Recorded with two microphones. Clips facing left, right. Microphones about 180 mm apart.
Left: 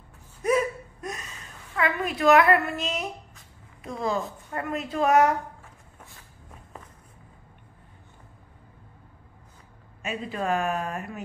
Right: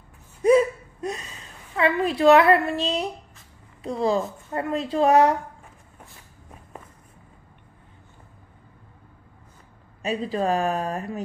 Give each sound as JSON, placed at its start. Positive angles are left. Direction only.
{"t": 0.4, "sound": "hiccup", "side_deg": -30}
{"t": 1.8, "sound": "a woman's voice", "side_deg": -30}
{"t": 10.0, "sound": "a woman's voice", "side_deg": -35}